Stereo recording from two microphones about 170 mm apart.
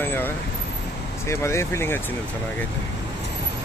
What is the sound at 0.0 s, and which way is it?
Vehicle, 10° left (ahead or behind).